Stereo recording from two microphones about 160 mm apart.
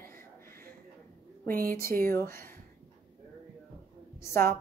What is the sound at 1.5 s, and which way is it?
Speech, 65° right (ahead or behind).